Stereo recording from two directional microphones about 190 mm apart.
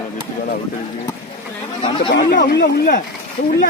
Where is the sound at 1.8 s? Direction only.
25° left (ahead or behind).